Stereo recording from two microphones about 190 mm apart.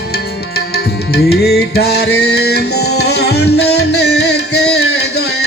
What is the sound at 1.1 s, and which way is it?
Music, 55° left (ahead or behind).